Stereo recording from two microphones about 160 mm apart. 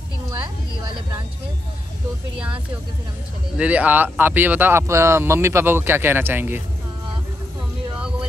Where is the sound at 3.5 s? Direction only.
10° right (ahead or behind).